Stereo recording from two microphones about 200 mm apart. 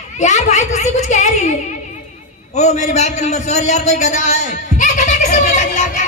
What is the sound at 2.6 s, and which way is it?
A man's voice, 35° left (ahead or behind).